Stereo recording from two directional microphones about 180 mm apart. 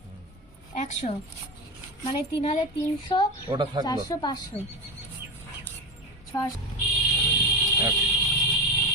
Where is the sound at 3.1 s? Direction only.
25° left (ahead or behind).